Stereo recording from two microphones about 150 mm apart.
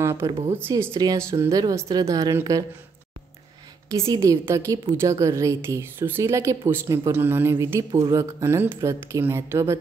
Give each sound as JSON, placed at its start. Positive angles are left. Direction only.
{"t": 0.0, "sound": "speech", "side_deg": -20}
{"t": 0.3, "sound": "speech", "side_deg": -40}
{"t": 1.0, "sound": "a woman's voice", "side_deg": -25}
{"t": 4.0, "sound": "a woman's voice", "side_deg": -20}